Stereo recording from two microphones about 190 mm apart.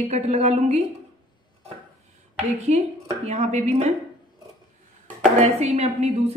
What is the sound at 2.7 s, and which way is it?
A woman's voice, 35° right (ahead or behind).